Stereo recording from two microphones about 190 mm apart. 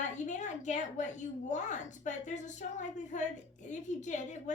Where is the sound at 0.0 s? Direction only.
40° left (ahead or behind).